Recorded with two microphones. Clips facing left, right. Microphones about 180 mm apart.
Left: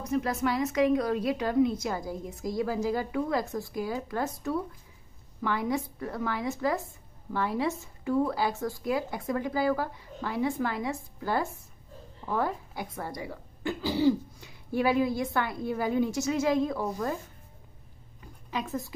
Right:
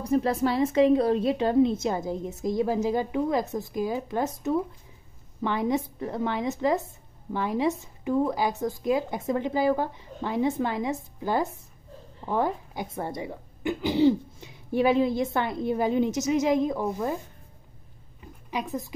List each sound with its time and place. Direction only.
0.0 s speech: 30° right (ahead or behind)
18.5 s speech: 15° right (ahead or behind)